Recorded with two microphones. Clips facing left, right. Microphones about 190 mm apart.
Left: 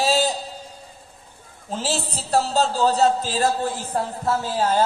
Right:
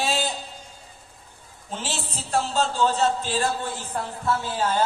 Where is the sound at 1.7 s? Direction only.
40° left (ahead or behind).